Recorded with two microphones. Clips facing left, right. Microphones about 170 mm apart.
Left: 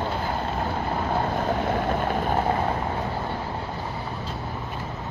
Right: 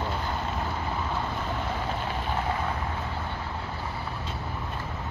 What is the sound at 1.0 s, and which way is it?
Vehicle, 50° left (ahead or behind).